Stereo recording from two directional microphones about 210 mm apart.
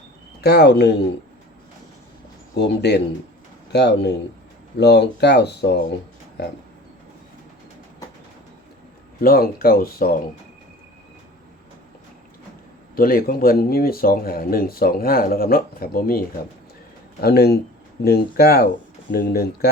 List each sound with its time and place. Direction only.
0.4 s speech: 50° left (ahead or behind)
2.6 s speech: 55° left (ahead or behind)
9.2 s speech: 45° left (ahead or behind)
13.0 s speech: 45° left (ahead or behind)